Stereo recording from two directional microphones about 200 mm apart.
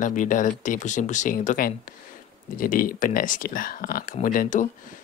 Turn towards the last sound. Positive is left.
turn(degrees=40)  # may be behind; listen again after turning